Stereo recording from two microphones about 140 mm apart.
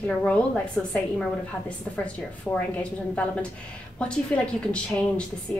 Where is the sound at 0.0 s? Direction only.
10° left (ahead or behind).